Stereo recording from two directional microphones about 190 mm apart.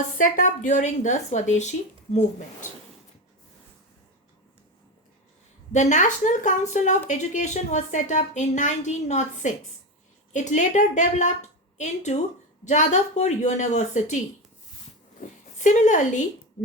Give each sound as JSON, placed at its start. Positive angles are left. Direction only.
{"t": 0.2, "sound": "speech", "side_deg": 45}
{"t": 5.7, "sound": "speech", "side_deg": 40}
{"t": 15.2, "sound": "a woman's voice", "side_deg": 40}